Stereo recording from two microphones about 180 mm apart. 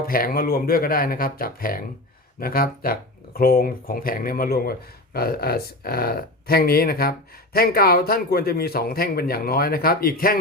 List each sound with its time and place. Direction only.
0.1 s speech: 55° left (ahead or behind)